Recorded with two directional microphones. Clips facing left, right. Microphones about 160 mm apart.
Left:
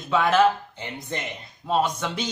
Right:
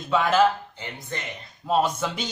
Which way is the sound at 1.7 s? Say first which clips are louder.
Right 1 dB; 5° right (ahead or behind).